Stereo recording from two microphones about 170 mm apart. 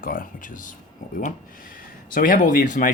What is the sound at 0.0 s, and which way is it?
Speech, 55° left (ahead or behind).